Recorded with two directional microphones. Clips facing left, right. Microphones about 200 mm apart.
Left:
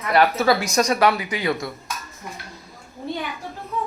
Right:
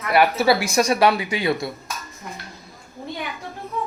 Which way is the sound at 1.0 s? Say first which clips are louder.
Right 1 dB; 25° right (ahead or behind).